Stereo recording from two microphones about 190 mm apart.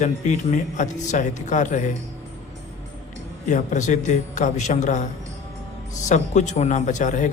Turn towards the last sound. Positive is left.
turn(degrees=40)  # may be behind; listen again after turning